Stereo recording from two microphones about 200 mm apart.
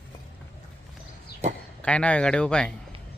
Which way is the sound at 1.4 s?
35° right (ahead or behind).